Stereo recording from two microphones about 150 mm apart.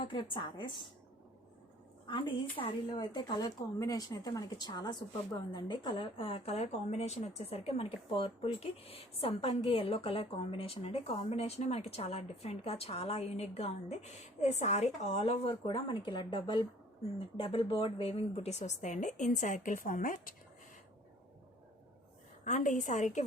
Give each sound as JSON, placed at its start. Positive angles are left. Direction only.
{"t": 0.0, "sound": "speech", "side_deg": 35}
{"t": 2.0, "sound": "a woman's voice", "side_deg": 30}
{"t": 22.4, "sound": "a woman's voice", "side_deg": 55}